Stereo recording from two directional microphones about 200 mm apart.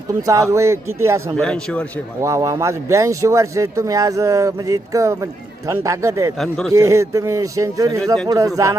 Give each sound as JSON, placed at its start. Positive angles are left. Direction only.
{"t": 0.1, "sound": "speech", "side_deg": -15}
{"t": 1.4, "sound": "a man's voice", "side_deg": 5}
{"t": 2.2, "sound": "speech", "side_deg": -15}